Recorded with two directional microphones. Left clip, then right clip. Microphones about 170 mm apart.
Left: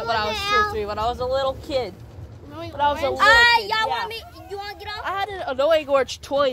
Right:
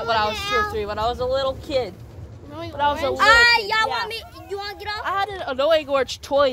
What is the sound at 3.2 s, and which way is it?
Speech, 30° right (ahead or behind).